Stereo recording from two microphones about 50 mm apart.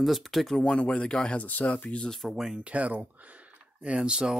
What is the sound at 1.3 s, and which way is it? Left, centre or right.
Speech, left.